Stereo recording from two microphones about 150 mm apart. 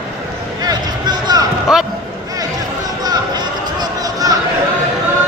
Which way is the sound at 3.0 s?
25° right (ahead or behind).